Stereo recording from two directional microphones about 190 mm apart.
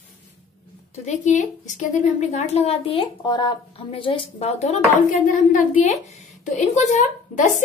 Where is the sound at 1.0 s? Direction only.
40° left (ahead or behind).